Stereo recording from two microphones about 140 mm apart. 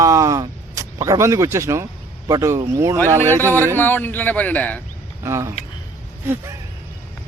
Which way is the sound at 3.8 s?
15° left (ahead or behind).